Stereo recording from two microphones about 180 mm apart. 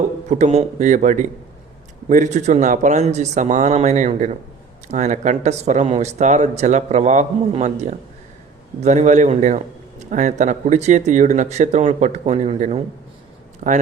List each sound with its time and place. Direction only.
0.3 s a man's voice: 40° right (ahead or behind)